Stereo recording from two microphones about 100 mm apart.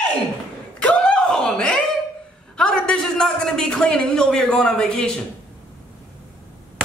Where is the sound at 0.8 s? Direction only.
10° left (ahead or behind).